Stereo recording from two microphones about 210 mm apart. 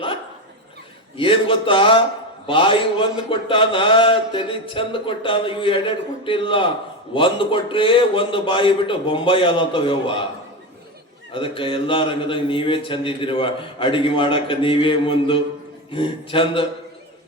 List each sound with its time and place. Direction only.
1.1 s speech: 25° left (ahead or behind)
11.3 s speech: 25° left (ahead or behind)